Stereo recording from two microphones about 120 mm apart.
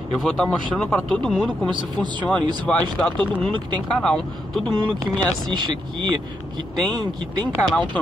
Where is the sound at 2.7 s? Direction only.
10° left (ahead or behind).